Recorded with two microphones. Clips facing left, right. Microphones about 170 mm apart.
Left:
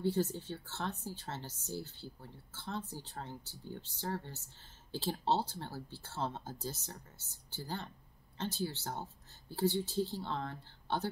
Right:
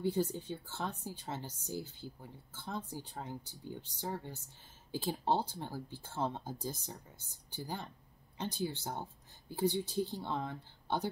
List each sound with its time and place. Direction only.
0.0 s a woman's voice: 15° right (ahead or behind)